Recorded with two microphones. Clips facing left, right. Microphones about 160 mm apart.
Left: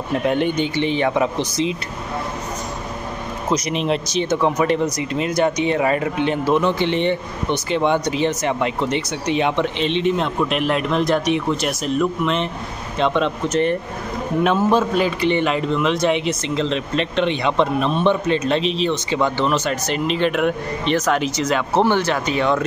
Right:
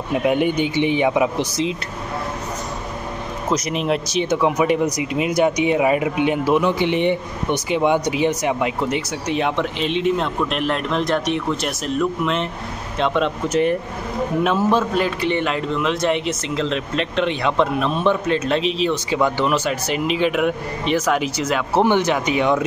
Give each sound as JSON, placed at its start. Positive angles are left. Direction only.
{"t": 0.1, "sound": "speech", "side_deg": -10}
{"t": 3.4, "sound": "a man's voice", "side_deg": -5}